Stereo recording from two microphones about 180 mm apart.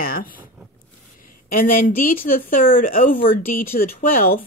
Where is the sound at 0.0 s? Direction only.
55° left (ahead or behind).